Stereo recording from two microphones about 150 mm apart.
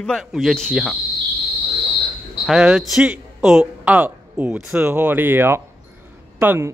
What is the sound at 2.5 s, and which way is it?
Speech, 5° right (ahead or behind).